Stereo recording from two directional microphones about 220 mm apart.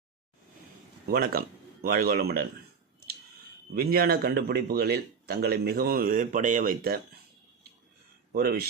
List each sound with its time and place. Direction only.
1.0 s speech: 40° right (ahead or behind)
3.8 s a man's voice: 45° right (ahead or behind)
8.3 s speech: 45° right (ahead or behind)